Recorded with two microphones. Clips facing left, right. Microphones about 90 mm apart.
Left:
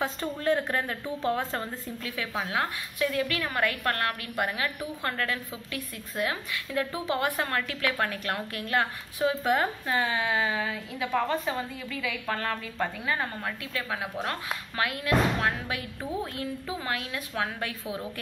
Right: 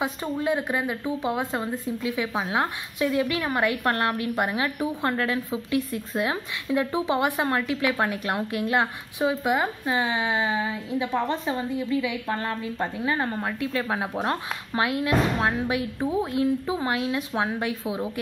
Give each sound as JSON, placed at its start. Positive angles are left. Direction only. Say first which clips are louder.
{"t": 0.0, "sound": "speech", "louder": "right 2 dB", "side_deg": -10}